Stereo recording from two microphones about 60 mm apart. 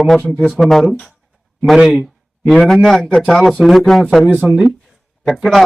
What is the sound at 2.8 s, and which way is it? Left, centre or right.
Music, centre.